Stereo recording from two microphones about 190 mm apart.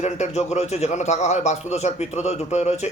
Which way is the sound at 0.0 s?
35° left (ahead or behind).